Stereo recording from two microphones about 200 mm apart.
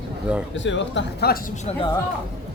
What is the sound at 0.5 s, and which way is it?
Speech, 65° left (ahead or behind).